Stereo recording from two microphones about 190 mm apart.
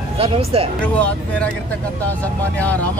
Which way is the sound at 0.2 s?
30° right (ahead or behind).